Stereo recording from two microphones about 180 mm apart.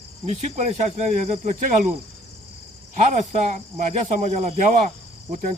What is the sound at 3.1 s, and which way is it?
Speech, 40° right (ahead or behind).